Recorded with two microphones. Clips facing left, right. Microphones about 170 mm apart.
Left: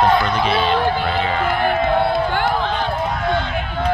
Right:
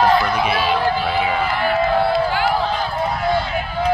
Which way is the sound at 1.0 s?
5° right (ahead or behind).